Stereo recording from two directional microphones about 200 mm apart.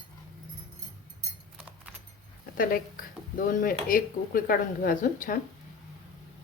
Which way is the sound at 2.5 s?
45° left (ahead or behind).